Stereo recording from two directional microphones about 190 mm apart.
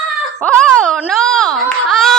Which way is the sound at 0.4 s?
5° left (ahead or behind).